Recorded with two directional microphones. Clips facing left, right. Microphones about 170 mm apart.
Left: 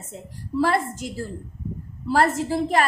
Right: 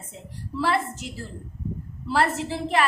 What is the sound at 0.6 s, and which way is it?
A woman's voice, 40° left (ahead or behind).